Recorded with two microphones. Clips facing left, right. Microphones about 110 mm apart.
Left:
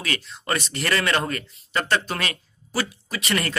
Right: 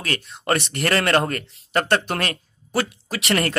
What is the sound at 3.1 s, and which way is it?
Speech, 75° right (ahead or behind).